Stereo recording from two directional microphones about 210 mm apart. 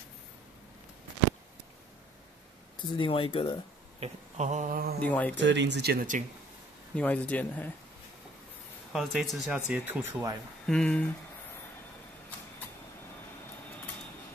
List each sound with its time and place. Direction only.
3.0 s speech: 25° left (ahead or behind)
4.0 s speech: 35° right (ahead or behind)
5.0 s speech: 5° left (ahead or behind)
5.3 s speech: 60° right (ahead or behind); by 6.2 s 40° right (ahead or behind)
7.0 s speech: 5° left (ahead or behind)
8.9 s speech: centre (ahead or behind)
10.7 s speech: 5° left (ahead or behind)